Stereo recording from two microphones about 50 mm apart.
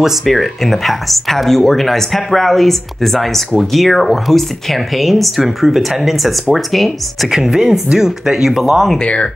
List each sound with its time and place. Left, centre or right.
0.2 s speech: centre
7.2 s speech: centre
8.9 s speech: left